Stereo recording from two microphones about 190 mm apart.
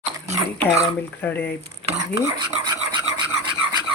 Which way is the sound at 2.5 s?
25° right (ahead or behind).